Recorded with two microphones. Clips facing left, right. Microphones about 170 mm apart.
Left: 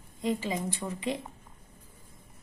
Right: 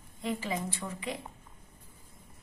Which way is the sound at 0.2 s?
15° left (ahead or behind).